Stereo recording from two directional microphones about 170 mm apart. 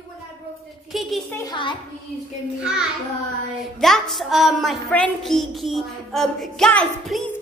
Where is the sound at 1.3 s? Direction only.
25° left (ahead or behind).